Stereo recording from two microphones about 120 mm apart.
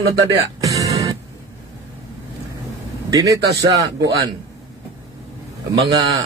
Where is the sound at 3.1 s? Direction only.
30° right (ahead or behind).